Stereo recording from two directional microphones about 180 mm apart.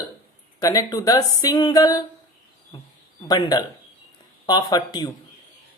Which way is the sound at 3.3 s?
20° left (ahead or behind).